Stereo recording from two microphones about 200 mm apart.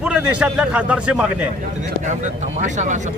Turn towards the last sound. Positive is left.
turn(degrees=-35)  # may be behind; listen again after turning